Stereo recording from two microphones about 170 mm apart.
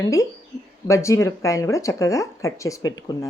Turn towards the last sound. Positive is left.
turn(degrees=20)  # may be behind; listen again after turning